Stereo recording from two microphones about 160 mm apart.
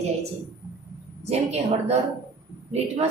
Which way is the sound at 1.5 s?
40° right (ahead or behind).